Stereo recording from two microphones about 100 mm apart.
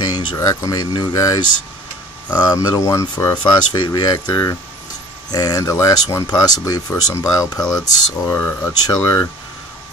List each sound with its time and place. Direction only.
0.0 s a sound: 45° left (ahead or behind)
0.4 s speech: 35° left (ahead or behind)
3.4 s speech: 50° left (ahead or behind)